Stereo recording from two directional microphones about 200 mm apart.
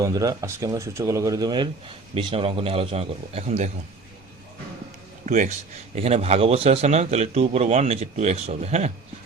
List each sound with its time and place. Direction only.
0.0 s a man's voice: 15° right (ahead or behind); by 3.7 s 35° right (ahead or behind)
5.2 s speech: 40° right (ahead or behind)